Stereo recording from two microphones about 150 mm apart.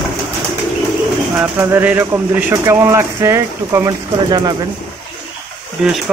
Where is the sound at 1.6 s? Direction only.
15° right (ahead or behind).